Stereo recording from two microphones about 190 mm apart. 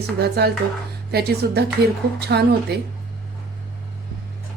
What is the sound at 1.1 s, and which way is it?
Speech, 55° right (ahead or behind).